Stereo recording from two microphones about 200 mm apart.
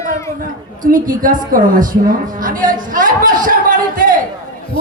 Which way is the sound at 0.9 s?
45° right (ahead or behind).